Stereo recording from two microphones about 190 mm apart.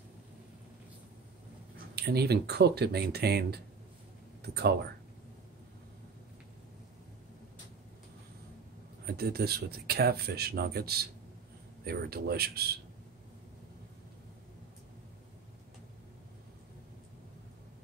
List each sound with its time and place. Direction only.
2.0 s speech: 60° right (ahead or behind)
4.4 s a sound: 60° right (ahead or behind)
9.0 s speech: 55° right (ahead or behind)